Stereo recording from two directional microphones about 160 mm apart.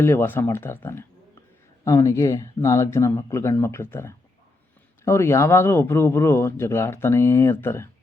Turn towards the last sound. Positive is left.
turn(degrees=15)  # may be behind; listen again after turning